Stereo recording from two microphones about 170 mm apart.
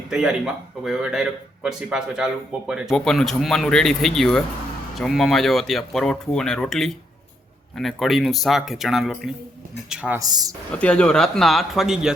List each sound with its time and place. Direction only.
0.1 s speech: 5° right (ahead or behind)
10.2 s speech: 20° right (ahead or behind)
10.7 s speech: 5° left (ahead or behind)